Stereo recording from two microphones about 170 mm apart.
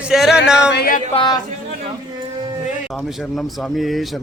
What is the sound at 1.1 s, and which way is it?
Speech, 30° left (ahead or behind).